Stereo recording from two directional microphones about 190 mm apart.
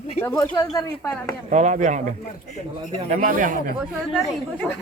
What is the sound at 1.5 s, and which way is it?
Speech, 40° right (ahead or behind).